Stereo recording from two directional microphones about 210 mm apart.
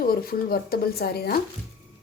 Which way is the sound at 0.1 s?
45° left (ahead or behind).